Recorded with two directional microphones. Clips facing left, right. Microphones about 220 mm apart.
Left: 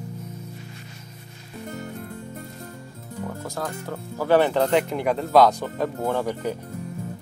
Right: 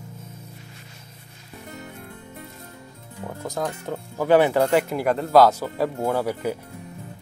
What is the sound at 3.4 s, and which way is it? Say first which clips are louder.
Speech: right 2 dB; 20° right (ahead or behind).